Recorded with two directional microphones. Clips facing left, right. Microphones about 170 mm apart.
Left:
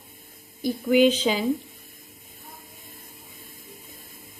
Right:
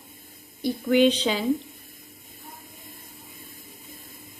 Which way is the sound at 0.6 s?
5° left (ahead or behind).